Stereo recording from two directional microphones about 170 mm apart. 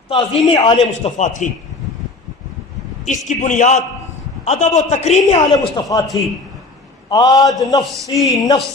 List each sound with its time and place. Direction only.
0.1 s a man's voice: 35° left (ahead or behind)
1.1 s a man's voice: 45° left (ahead or behind)
3.3 s a man's voice: 45° left (ahead or behind)
5.4 s a man's voice: 25° left (ahead or behind)
7.1 s a man's voice: 25° left (ahead or behind)